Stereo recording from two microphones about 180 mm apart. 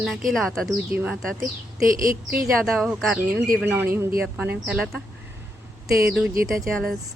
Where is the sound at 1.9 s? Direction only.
50° right (ahead or behind).